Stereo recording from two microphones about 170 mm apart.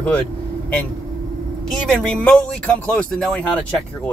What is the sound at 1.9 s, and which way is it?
Speech, 5° left (ahead or behind).